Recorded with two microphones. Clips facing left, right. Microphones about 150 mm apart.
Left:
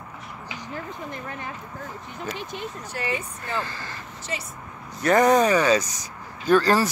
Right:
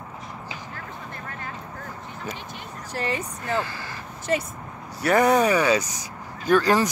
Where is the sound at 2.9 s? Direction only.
35° right (ahead or behind).